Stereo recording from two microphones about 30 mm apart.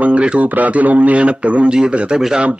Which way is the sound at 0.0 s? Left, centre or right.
Right.